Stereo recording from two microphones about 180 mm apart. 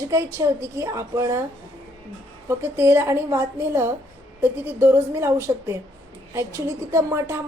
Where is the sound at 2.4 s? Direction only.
15° right (ahead or behind).